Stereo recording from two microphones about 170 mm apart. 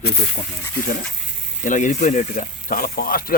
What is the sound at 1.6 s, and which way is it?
Speech, 45° left (ahead or behind).